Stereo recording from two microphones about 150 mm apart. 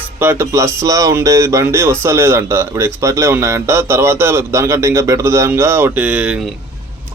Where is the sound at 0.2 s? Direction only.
15° right (ahead or behind).